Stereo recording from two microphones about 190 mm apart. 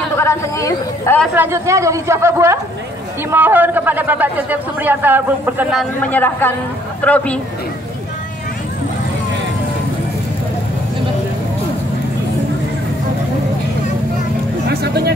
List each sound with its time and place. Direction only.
0.2 s a man's voice: 15° left (ahead or behind)
1.3 s a man's voice: 15° right (ahead or behind)
6.0 s a man's voice: 10° left (ahead or behind)
14.7 s a sound: 60° right (ahead or behind)